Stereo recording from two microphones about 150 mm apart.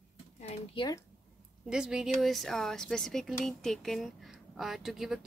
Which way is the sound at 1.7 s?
5° right (ahead or behind).